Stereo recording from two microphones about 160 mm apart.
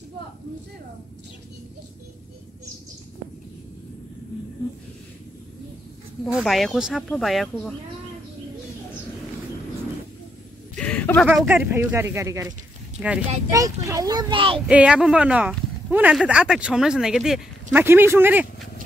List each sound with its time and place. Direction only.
6.3 s speech: centre (ahead or behind)
10.8 s a sound: 10° left (ahead or behind)
11.2 s speech: 5° right (ahead or behind)
13.0 s speech: 10° right (ahead or behind)
13.5 s a child's voice: 20° right (ahead or behind)
14.7 s speech: 5° right (ahead or behind)
17.8 s speech: 15° right (ahead or behind)